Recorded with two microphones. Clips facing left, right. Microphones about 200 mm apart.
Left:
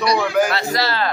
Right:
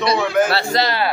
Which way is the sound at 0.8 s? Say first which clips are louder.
Right 1 dB; 15° right (ahead or behind).